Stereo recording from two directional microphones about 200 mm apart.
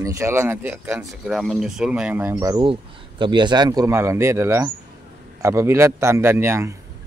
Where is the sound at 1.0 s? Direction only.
Centre (ahead or behind).